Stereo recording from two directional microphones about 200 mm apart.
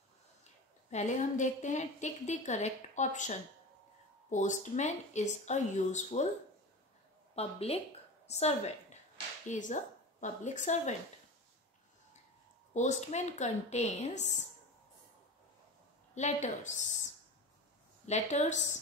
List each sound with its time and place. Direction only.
0.8 s a woman's voice: 35° left (ahead or behind)
7.3 s a woman's voice: 30° left (ahead or behind)
12.7 s a woman's voice: 35° left (ahead or behind)
16.2 s a woman's voice: 35° left (ahead or behind)
18.0 s a woman's voice: 35° left (ahead or behind)